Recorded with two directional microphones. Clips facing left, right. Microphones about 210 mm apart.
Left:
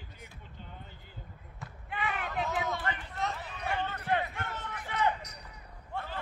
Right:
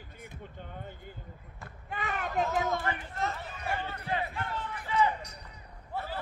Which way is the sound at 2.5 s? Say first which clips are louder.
Right 3 dB; 45° right (ahead or behind).